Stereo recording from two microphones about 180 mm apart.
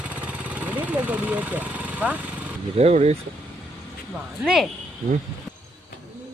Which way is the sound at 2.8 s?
35° right (ahead or behind).